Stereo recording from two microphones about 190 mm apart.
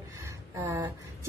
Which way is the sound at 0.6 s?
15° right (ahead or behind).